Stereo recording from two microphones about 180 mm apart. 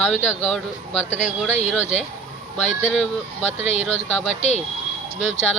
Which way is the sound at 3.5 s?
35° left (ahead or behind).